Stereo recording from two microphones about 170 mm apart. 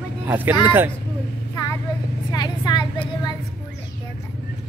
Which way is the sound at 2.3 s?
25° left (ahead or behind).